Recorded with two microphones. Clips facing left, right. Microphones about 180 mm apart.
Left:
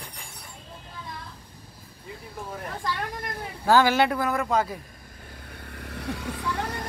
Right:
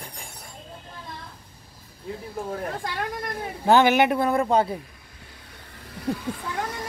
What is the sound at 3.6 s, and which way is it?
Speech, 20° right (ahead or behind).